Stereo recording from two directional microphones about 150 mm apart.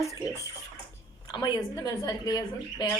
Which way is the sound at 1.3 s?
30° left (ahead or behind).